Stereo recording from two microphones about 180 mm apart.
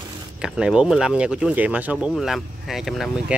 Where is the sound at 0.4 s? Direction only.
5° right (ahead or behind).